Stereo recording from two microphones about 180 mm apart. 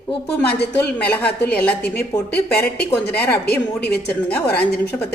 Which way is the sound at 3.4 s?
65° left (ahead or behind).